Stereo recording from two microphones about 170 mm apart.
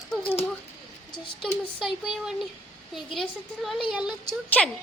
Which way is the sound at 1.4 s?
Centre (ahead or behind).